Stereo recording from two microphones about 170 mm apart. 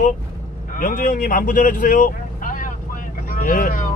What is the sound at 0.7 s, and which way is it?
Speech, 55° left (ahead or behind).